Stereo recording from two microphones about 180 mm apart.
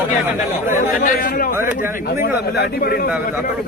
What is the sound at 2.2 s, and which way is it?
Speech, 65° left (ahead or behind).